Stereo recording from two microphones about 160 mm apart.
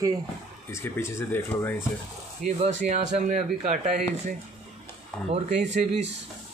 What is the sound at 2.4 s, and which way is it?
Speech, 50° right (ahead or behind).